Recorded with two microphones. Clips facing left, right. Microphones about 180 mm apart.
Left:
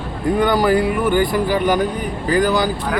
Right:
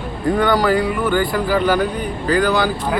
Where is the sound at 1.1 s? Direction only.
15° left (ahead or behind).